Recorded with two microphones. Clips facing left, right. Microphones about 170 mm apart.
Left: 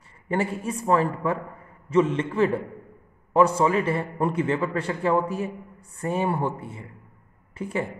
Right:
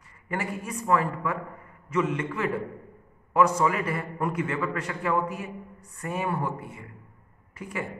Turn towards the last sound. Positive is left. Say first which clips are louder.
# left 6 dB
turn(degrees=30)  # may be behind; listen again after turning